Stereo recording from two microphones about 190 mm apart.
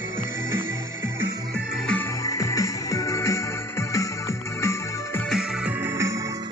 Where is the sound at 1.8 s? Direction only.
5° left (ahead or behind).